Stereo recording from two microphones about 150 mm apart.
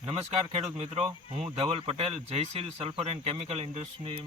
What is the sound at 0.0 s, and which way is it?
Speech, 40° right (ahead or behind).